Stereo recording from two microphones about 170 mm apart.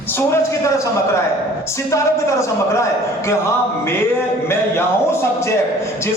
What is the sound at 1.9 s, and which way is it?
A man's voice, 15° left (ahead or behind).